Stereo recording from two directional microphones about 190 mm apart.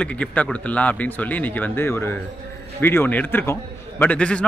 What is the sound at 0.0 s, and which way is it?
A man's voice, 5° left (ahead or behind).